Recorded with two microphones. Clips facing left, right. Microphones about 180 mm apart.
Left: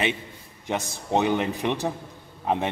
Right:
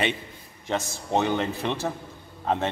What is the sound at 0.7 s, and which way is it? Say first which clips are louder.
A man's voice: even; 15° left (ahead or behind).